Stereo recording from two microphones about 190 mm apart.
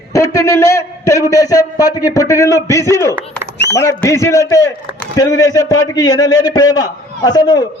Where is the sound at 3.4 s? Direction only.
5° left (ahead or behind).